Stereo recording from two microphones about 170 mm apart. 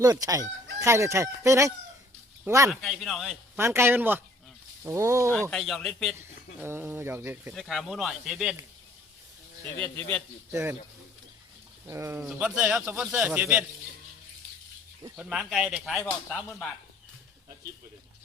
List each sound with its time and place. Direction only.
0.0 s speech: 20° right (ahead or behind)
2.8 s speech: centre (ahead or behind)
3.6 s speech: 15° right (ahead or behind)
5.3 s speech: 5° left (ahead or behind)
6.6 s speech: 15° right (ahead or behind)
7.5 s speech: centre (ahead or behind)
9.7 s speech: 10° left (ahead or behind)
11.9 s speech: 15° right (ahead or behind)
15.1 s speech: 5° right (ahead or behind)